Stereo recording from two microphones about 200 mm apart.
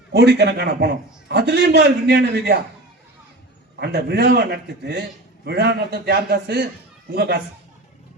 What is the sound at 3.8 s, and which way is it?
A man's voice, 55° right (ahead or behind).